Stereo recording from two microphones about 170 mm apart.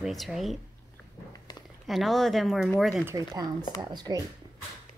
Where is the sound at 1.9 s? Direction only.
Centre (ahead or behind).